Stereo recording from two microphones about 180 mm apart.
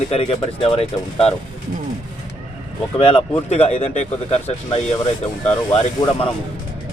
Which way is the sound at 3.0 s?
30° left (ahead or behind).